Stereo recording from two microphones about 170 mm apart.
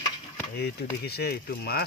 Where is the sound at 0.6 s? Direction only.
70° left (ahead or behind).